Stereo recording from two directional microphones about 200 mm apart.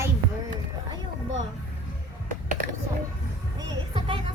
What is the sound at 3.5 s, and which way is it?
Music, 20° right (ahead or behind).